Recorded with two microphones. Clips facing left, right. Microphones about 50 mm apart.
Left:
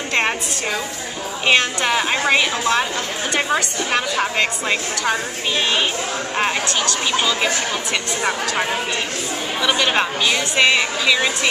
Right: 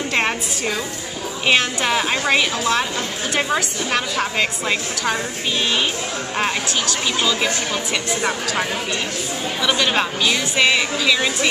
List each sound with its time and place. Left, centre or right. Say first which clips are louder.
0.1 s a woman's voice: left 3 dB; centre
6.3 s a woman's voice: left 1 dB; centre